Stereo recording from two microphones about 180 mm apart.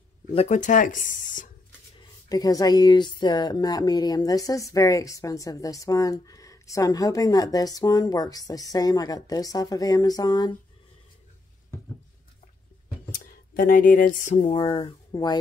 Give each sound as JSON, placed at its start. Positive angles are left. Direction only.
{"t": 0.3, "sound": "speech", "side_deg": 35}
{"t": 2.0, "sound": "speech", "side_deg": 20}
{"t": 13.2, "sound": "speech", "side_deg": 50}
{"t": 14.5, "sound": "speech", "side_deg": 30}